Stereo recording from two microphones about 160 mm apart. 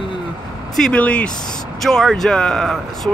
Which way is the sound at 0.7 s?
5° left (ahead or behind).